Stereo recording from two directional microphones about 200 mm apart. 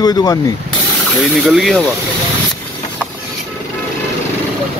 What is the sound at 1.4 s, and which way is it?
Speech, centre (ahead or behind).